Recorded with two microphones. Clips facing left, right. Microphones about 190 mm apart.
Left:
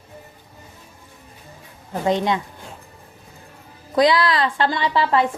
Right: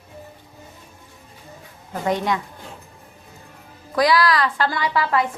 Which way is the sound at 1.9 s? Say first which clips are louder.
Left 2 dB; 25° left (ahead or behind).